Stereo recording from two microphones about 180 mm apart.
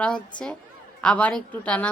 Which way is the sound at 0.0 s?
5° left (ahead or behind).